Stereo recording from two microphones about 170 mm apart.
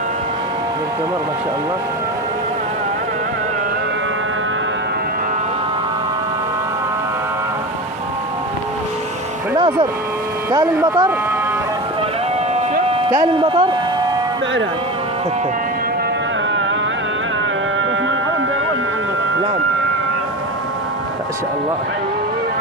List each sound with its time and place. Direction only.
9.6 s speech: 30° right (ahead or behind)
13.2 s speech: 30° right (ahead or behind)